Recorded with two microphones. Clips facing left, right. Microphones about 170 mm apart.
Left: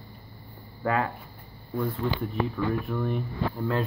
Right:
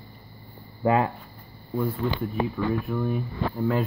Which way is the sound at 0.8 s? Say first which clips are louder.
Right 5 dB; 20° right (ahead or behind).